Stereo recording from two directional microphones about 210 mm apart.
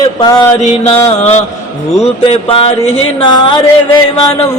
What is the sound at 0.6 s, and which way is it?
Music, 30° left (ahead or behind).